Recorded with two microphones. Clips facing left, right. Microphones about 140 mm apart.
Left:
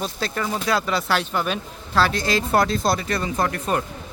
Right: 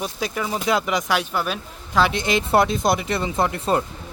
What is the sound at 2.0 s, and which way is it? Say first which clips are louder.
Speech: right 1 dB; 20° right (ahead or behind).